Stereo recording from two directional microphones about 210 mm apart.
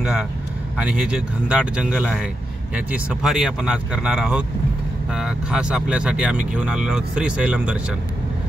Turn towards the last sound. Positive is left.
turn(degrees=-5)  # may be behind; listen again after turning